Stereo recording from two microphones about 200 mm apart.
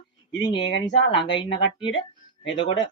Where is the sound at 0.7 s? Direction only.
60° left (ahead or behind).